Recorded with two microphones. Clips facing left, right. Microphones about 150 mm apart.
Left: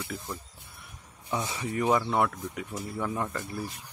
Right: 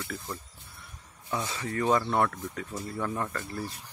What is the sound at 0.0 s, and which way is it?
Speech, 15° left (ahead or behind).